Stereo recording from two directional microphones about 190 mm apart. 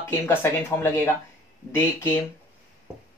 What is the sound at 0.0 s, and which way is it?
Speech, 10° left (ahead or behind).